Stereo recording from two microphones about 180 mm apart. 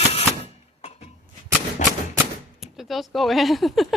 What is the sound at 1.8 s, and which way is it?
Typewriter, 40° left (ahead or behind).